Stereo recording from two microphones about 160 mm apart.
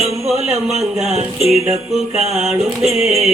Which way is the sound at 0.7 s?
45° right (ahead or behind).